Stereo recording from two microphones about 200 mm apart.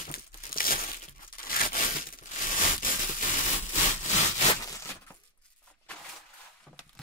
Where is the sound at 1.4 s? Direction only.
45° left (ahead or behind).